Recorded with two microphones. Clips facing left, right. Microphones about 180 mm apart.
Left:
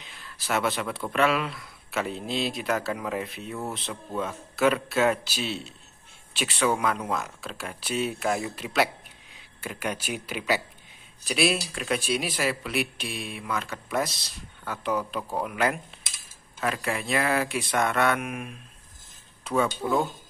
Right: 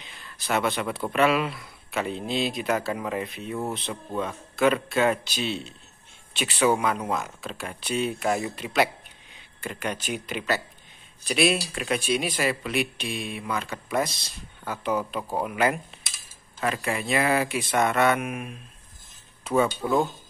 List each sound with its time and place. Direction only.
0.0 s speech: centre (ahead or behind)